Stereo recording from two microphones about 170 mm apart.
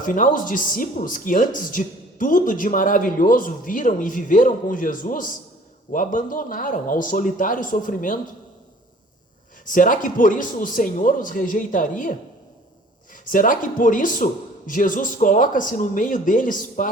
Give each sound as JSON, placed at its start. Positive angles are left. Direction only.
{"t": 0.0, "sound": "speech", "side_deg": 50}
{"t": 9.6, "sound": "speech", "side_deg": 50}
{"t": 13.2, "sound": "speech", "side_deg": 50}